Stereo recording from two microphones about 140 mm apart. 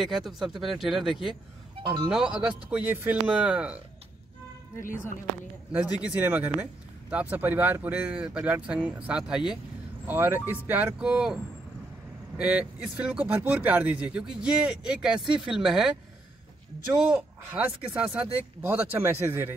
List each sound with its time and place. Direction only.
0.0 s speech: centre (ahead or behind)
1.8 s speech: 35° right (ahead or behind)
2.0 s speech: 5° right (ahead or behind)
4.8 s speech: 70° left (ahead or behind)
5.9 s speech: 10° right (ahead or behind)
12.4 s speech: 10° right (ahead or behind)
16.9 s speech: 5° right (ahead or behind)